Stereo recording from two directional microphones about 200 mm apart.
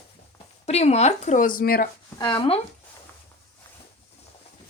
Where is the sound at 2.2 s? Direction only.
25° left (ahead or behind).